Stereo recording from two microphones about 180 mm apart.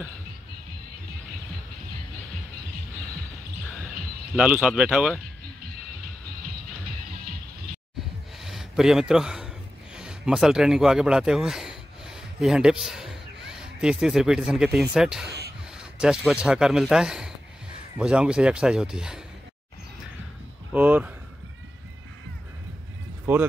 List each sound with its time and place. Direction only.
4.4 s speech: 5° right (ahead or behind)
8.4 s a sound: centre (ahead or behind)
9.9 s speech: 5° right (ahead or behind)
15.2 s a sound: 65° right (ahead or behind)
15.8 s speech: 5° right (ahead or behind)
20.7 s speech: 5° right (ahead or behind)
23.3 s speech: 10° right (ahead or behind)